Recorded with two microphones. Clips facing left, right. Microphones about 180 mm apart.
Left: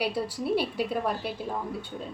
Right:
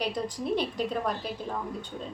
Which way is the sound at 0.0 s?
10° left (ahead or behind).